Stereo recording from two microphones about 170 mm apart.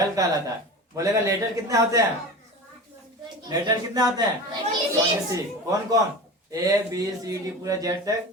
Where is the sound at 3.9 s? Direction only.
25° right (ahead or behind).